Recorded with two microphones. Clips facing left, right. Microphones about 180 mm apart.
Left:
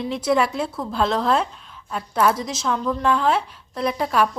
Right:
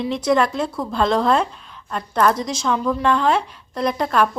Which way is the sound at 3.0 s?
5° left (ahead or behind).